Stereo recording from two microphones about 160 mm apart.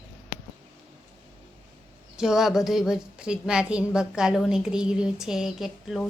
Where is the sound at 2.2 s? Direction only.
5° right (ahead or behind).